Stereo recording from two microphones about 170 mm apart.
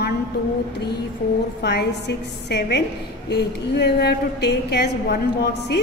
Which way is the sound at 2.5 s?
75° left (ahead or behind).